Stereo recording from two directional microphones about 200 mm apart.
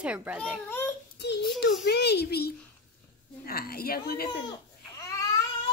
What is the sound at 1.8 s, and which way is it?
A child's voice, 55° left (ahead or behind).